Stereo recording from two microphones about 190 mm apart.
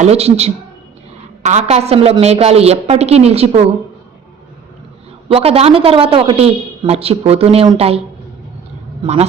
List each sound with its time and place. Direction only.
0.0 s a man's voice: 35° right (ahead or behind)
5.3 s a man's voice: 30° right (ahead or behind)